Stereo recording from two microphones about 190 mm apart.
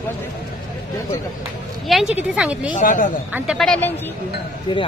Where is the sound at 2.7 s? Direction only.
45° left (ahead or behind).